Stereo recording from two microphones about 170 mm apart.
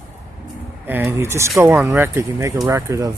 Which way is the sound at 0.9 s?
15° right (ahead or behind).